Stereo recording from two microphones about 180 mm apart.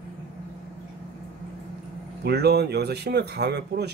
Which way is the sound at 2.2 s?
65° right (ahead or behind).